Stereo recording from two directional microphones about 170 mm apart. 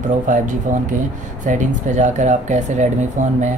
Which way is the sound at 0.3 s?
50° right (ahead or behind).